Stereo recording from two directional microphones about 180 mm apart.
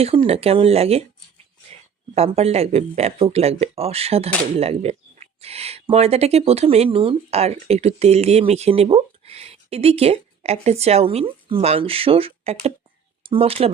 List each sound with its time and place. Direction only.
0.0 s speech: 30° right (ahead or behind)
2.1 s speech: 35° right (ahead or behind)